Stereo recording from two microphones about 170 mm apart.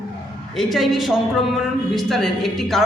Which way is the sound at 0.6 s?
Centre (ahead or behind).